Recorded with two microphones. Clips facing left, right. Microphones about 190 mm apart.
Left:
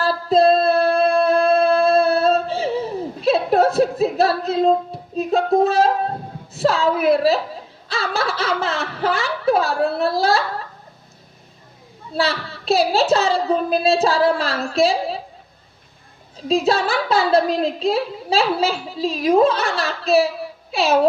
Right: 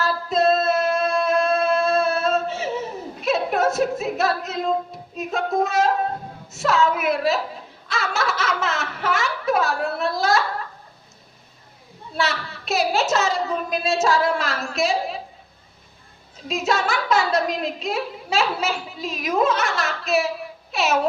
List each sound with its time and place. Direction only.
0.0 s female singing: 30° left (ahead or behind)
6.5 s a woman's voice: 30° left (ahead or behind)
12.1 s a woman's voice: 30° left (ahead or behind)
16.5 s a woman's voice: 35° left (ahead or behind)